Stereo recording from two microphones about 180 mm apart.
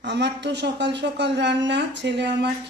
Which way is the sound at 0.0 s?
70° right (ahead or behind).